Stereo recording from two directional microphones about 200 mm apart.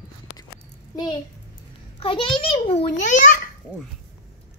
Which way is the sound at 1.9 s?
25° left (ahead or behind).